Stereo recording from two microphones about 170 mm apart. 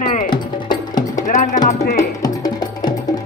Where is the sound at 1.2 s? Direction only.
45° left (ahead or behind).